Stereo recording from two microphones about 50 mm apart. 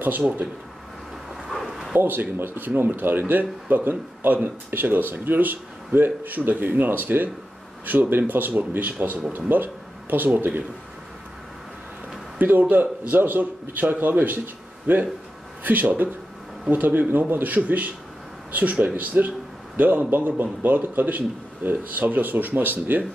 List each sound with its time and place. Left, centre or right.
1.5 s a sound: centre
2.0 s speech: right
12.4 s speech: right